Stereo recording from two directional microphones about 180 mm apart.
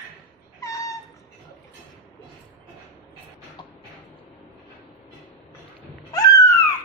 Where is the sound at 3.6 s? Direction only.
25° left (ahead or behind).